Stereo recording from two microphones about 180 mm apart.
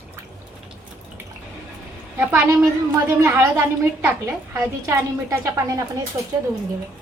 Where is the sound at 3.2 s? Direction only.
15° right (ahead or behind).